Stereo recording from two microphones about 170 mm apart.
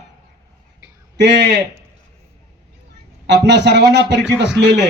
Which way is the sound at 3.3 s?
90° right.